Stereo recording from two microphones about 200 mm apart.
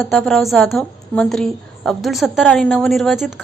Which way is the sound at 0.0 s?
Centre (ahead or behind).